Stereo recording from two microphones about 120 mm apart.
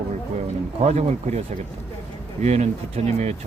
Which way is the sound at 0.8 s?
60° right (ahead or behind).